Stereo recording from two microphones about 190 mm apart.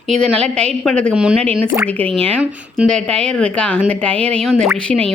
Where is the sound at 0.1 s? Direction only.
5° left (ahead or behind).